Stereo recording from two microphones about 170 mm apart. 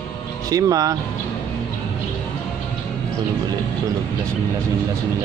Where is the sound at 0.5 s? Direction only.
20° right (ahead or behind).